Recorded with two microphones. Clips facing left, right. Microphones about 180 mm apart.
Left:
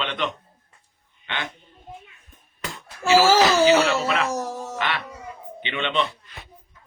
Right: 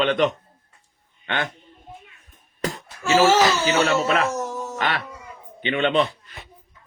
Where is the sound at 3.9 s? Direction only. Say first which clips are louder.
Right 3 dB; 40° right (ahead or behind).